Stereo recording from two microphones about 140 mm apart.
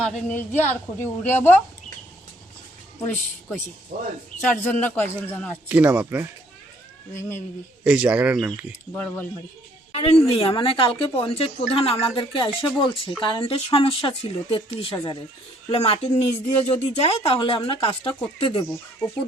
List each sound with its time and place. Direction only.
0.0 s a woman's voice: 5° left (ahead or behind)
3.9 s speech: 75° right (ahead or behind)
4.4 s a woman's voice: 10° left (ahead or behind)
5.6 s speech: 10° right (ahead or behind)
7.1 s a woman's voice: 20° left (ahead or behind)
7.9 s speech: 10° right (ahead or behind)
8.9 s a woman's voice: 15° left (ahead or behind)
9.9 s a woman's voice: 45° left (ahead or behind)